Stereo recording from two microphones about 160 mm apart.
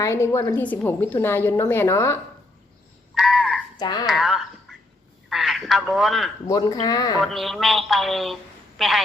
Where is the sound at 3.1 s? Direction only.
Centre (ahead or behind).